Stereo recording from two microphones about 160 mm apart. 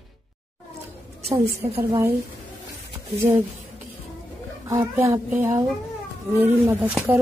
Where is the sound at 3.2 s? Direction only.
15° right (ahead or behind).